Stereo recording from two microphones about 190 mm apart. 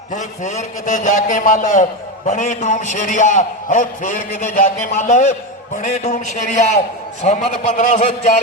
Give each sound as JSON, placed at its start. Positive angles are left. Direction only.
{"t": 0.1, "sound": "a man's voice", "side_deg": 40}